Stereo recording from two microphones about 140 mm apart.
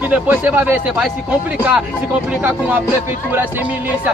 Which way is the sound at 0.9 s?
Centre (ahead or behind).